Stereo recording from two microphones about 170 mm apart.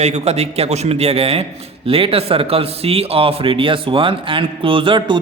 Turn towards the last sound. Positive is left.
turn(degrees=-30)  # may be behind; listen again after turning